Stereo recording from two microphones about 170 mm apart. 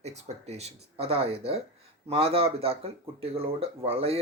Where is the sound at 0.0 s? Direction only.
40° right (ahead or behind).